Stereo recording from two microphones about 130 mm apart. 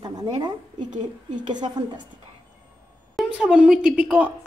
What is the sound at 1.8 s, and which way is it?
Speech, 30° right (ahead or behind).